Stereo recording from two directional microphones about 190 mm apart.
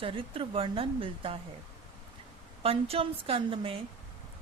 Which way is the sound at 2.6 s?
30° right (ahead or behind).